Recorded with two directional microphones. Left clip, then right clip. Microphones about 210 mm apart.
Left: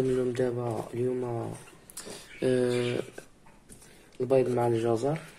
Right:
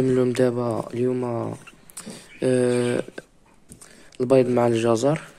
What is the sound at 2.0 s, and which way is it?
Speech, 25° right (ahead or behind).